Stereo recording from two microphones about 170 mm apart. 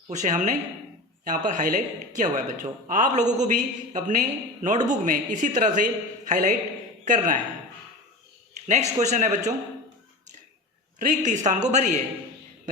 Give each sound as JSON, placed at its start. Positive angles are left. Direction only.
{"t": 0.1, "sound": "speech", "side_deg": -45}
{"t": 8.6, "sound": "speech", "side_deg": -45}
{"t": 11.0, "sound": "speech", "side_deg": -45}